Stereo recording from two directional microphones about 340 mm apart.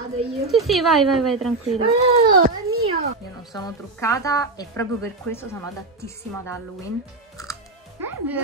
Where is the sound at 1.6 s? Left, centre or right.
Centre.